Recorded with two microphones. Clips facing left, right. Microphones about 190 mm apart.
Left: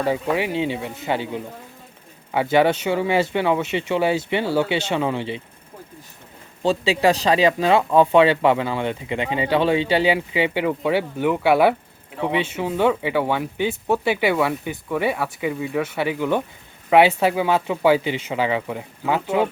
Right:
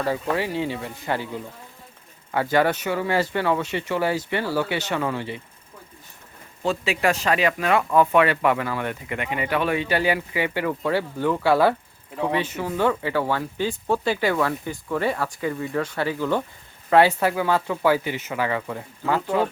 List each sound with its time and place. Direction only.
0.0 s speech: 15° left (ahead or behind)
6.6 s speech: 30° left (ahead or behind)